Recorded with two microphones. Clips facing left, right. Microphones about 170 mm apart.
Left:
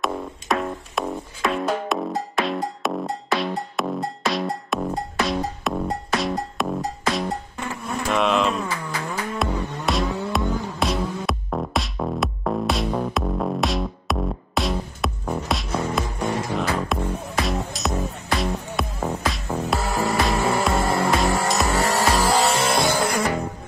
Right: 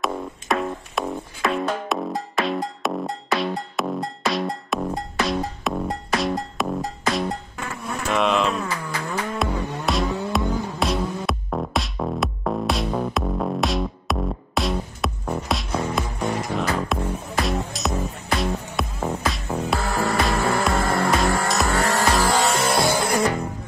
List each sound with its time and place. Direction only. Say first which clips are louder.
0.0 s music: even; centre (ahead or behind)
8.1 s a sound: even; centre (ahead or behind)
9.4 s music: even; centre (ahead or behind)
22.4 s music: even; centre (ahead or behind)